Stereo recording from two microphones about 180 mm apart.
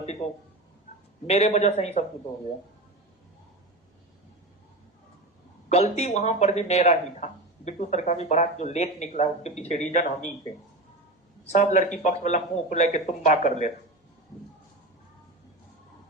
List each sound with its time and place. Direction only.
1.3 s speech: 35° left (ahead or behind)
5.6 s speech: 35° left (ahead or behind)
11.4 s speech: 40° left (ahead or behind)